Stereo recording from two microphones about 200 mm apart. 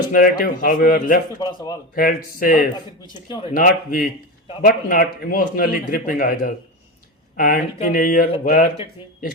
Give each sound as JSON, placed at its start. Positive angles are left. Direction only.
{"t": 0.1, "sound": "a man's voice", "side_deg": 45}
{"t": 1.4, "sound": "speech", "side_deg": 20}
{"t": 2.0, "sound": "a man's voice", "side_deg": 45}
{"t": 3.2, "sound": "speech", "side_deg": 20}
{"t": 3.5, "sound": "a man's voice", "side_deg": 45}